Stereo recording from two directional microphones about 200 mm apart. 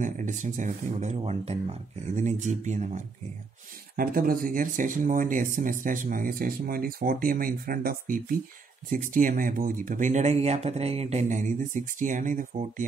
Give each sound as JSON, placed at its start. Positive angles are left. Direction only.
{"t": 0.0, "sound": "speech", "side_deg": -40}
{"t": 3.9, "sound": "speech", "side_deg": -45}